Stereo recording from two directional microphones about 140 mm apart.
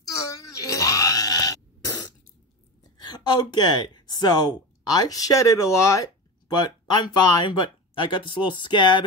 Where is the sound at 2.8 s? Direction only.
30° left (ahead or behind).